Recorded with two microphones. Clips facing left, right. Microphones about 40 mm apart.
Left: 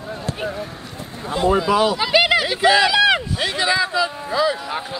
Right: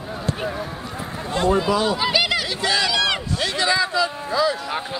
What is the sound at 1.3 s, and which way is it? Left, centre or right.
Speech, centre.